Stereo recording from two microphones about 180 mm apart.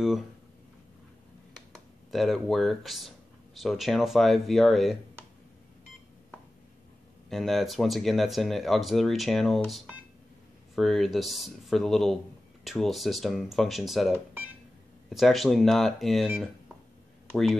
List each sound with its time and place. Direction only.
2.0 s speech: centre (ahead or behind)
7.2 s speech: centre (ahead or behind)